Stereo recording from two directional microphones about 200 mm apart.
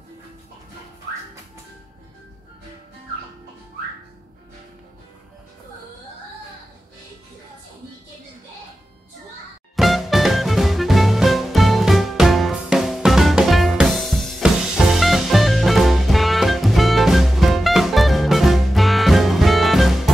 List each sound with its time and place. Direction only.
9.8 s music: centre (ahead or behind)